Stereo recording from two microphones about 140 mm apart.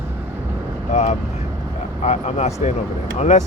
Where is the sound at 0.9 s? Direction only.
55° left (ahead or behind).